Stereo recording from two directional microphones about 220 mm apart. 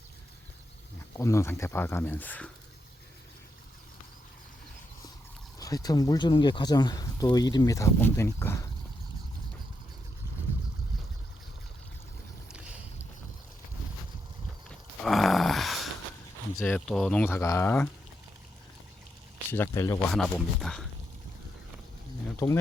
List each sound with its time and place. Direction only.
1.1 s speech: 10° left (ahead or behind)
5.5 s speech: 15° left (ahead or behind)
15.0 s a sound: centre (ahead or behind)
16.6 s speech: centre (ahead or behind)
19.5 s speech: 10° left (ahead or behind)
20.1 s speech: centre (ahead or behind)
22.4 s speech: 15° left (ahead or behind)